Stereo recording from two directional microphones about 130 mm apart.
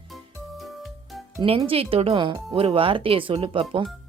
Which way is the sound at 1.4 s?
45° right (ahead or behind).